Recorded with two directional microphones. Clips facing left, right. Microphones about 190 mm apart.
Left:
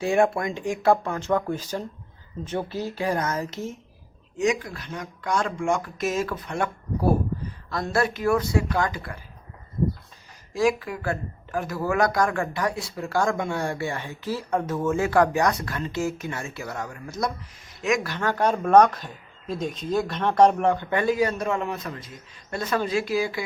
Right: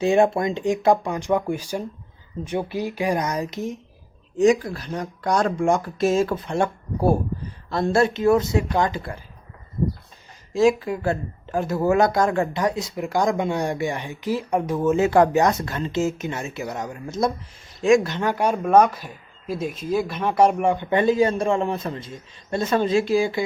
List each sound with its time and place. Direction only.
0.0 s speech: 20° right (ahead or behind)
4.4 s speech: 35° right (ahead or behind)
10.5 s speech: 25° right (ahead or behind)
20.9 s speech: 25° right (ahead or behind)